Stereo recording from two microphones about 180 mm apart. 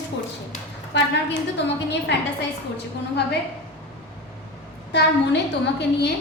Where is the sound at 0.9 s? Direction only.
75° left (ahead or behind).